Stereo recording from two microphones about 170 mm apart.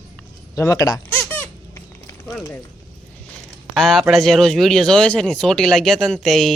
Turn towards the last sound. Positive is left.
turn(degrees=0)  # may be behind; listen again after turning